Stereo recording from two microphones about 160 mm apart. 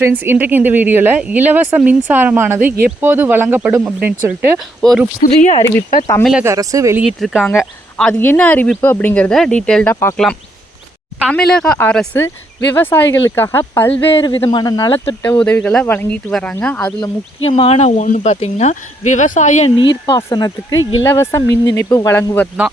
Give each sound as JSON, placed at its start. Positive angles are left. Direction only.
{"t": 0.0, "sound": "speech", "side_deg": -15}
{"t": 5.2, "sound": "speech", "side_deg": 50}
{"t": 6.4, "sound": "speech", "side_deg": -20}
{"t": 7.0, "sound": "speech", "side_deg": -5}
{"t": 11.3, "sound": "speech", "side_deg": 5}
{"t": 14.1, "sound": "speech", "side_deg": 30}
{"t": 15.2, "sound": "speech", "side_deg": 10}
{"t": 17.4, "sound": "speech", "side_deg": 40}
{"t": 19.7, "sound": "speech", "side_deg": 30}